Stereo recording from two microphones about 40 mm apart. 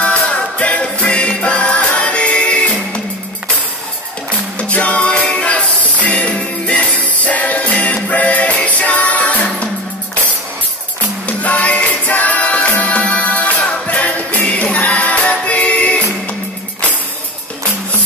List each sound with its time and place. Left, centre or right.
0.0 s music: left
4.6 s music: left
11.2 s music: left